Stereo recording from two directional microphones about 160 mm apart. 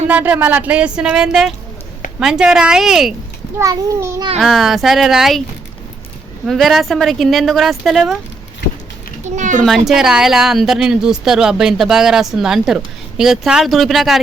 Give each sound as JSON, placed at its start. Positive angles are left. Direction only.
{"t": 0.1, "sound": "a woman's voice", "side_deg": -10}
{"t": 3.6, "sound": "a child's voice", "side_deg": -20}
{"t": 4.4, "sound": "a woman's voice", "side_deg": 0}
{"t": 6.4, "sound": "a woman's voice", "side_deg": 0}
{"t": 9.2, "sound": "a child's voice", "side_deg": -50}
{"t": 9.6, "sound": "a woman's voice", "side_deg": 0}